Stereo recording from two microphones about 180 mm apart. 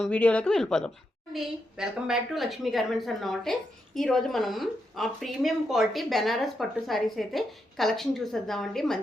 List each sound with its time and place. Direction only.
0.0 s a woman's voice: 5° left (ahead or behind)